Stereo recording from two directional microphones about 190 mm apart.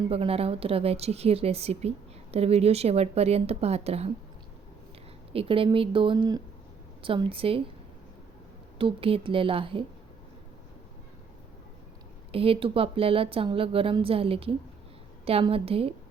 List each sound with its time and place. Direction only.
0.1 s speech: 30° right (ahead or behind)
5.3 s a woman's voice: 30° right (ahead or behind)
8.8 s a woman's voice: 30° right (ahead or behind)
12.3 s a woman's voice: 30° right (ahead or behind)